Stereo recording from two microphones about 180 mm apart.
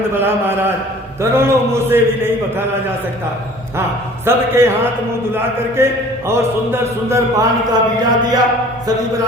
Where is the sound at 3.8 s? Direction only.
15° right (ahead or behind).